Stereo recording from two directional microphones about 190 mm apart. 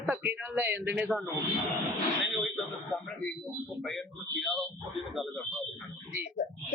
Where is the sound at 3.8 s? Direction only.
Centre (ahead or behind).